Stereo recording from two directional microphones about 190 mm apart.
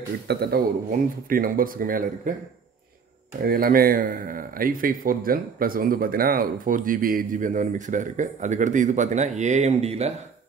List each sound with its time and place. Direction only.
0.3 s a man's voice: 55° right (ahead or behind)
3.4 s speech: 50° right (ahead or behind); by 10.1 s 35° right (ahead or behind)